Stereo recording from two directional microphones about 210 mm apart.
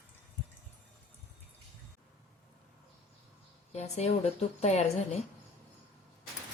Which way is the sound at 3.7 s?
30° left (ahead or behind).